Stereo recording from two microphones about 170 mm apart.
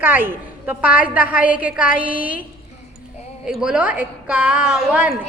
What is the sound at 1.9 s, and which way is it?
Speech, 55° left (ahead or behind).